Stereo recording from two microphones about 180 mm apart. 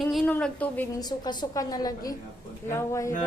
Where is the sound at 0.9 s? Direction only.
25° left (ahead or behind).